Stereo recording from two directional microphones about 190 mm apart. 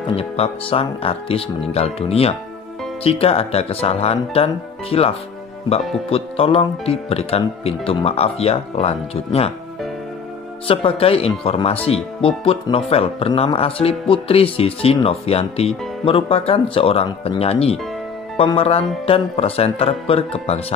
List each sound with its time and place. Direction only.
0.1 s speech: 30° left (ahead or behind)
10.7 s speech: 30° left (ahead or behind)